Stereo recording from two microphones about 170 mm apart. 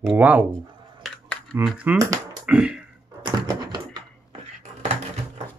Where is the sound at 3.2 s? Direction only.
25° right (ahead or behind).